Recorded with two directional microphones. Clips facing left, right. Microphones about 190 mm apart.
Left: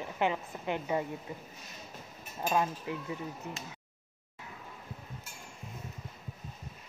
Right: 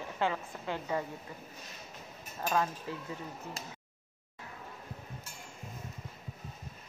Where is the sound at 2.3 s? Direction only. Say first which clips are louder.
Left 1 dB; 15° left (ahead or behind).